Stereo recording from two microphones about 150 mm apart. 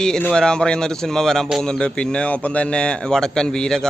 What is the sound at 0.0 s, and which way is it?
Speech, 5° left (ahead or behind).